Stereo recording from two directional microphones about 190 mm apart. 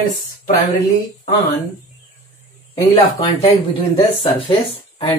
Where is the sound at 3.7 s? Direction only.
30° left (ahead or behind).